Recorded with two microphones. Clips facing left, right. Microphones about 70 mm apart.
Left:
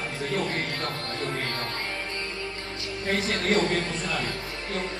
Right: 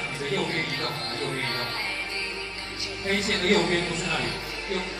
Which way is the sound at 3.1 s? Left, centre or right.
Left.